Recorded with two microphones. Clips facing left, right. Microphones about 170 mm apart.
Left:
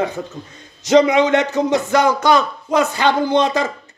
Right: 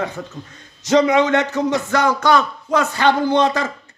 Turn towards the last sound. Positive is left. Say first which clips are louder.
# left 1 dB
turn(degrees=15)  # may be behind; listen again after turning